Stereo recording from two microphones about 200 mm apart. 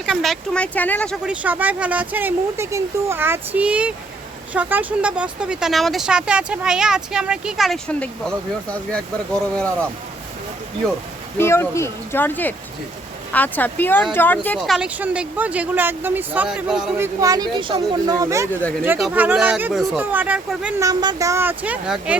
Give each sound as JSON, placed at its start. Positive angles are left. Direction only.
{"t": 0.0, "sound": "speech", "side_deg": 0}
{"t": 1.2, "sound": "speech", "side_deg": -5}
{"t": 11.3, "sound": "speech", "side_deg": 10}
{"t": 14.8, "sound": "speech", "side_deg": -5}
{"t": 17.2, "sound": "speech", "side_deg": -20}
{"t": 18.9, "sound": "speech", "side_deg": -5}
{"t": 20.8, "sound": "speech", "side_deg": -20}